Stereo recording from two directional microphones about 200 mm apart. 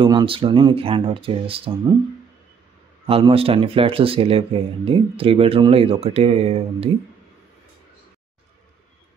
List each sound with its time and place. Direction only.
0.0 s speech: 25° right (ahead or behind)
3.1 s speech: 30° right (ahead or behind)